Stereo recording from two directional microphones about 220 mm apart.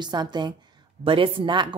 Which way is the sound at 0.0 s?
20° right (ahead or behind).